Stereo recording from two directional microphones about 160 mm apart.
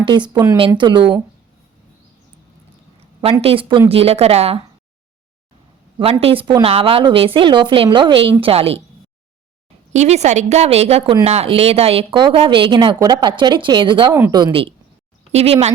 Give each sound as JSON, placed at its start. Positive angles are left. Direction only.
{"t": 0.0, "sound": "speech", "side_deg": -30}
{"t": 3.4, "sound": "a woman's voice", "side_deg": -35}
{"t": 6.0, "sound": "a woman's voice", "side_deg": -35}
{"t": 9.9, "sound": "a woman's voice", "side_deg": -45}
{"t": 14.1, "sound": "speech", "side_deg": -15}
{"t": 14.3, "sound": "a woman's voice", "side_deg": -30}